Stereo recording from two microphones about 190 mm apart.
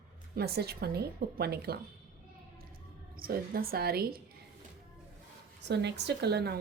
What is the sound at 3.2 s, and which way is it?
A woman's voice, 50° right (ahead or behind).